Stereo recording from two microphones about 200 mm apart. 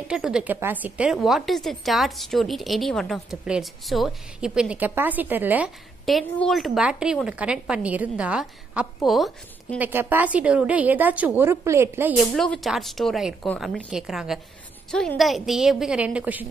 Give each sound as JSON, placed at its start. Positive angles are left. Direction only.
{"t": 0.1, "sound": "a woman's voice", "side_deg": -5}
{"t": 12.4, "sound": "a woman's voice", "side_deg": 0}